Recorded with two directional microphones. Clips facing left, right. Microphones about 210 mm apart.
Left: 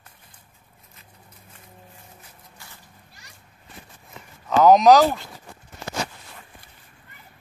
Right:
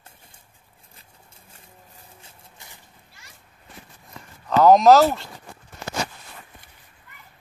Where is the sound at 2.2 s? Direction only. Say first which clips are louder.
Left 1 dB; 20° right (ahead or behind).